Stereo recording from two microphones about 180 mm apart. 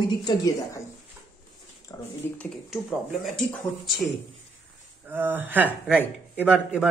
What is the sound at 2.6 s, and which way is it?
Speech, centre (ahead or behind).